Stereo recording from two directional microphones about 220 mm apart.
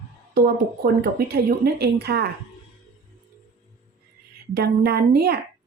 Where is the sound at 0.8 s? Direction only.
45° right (ahead or behind).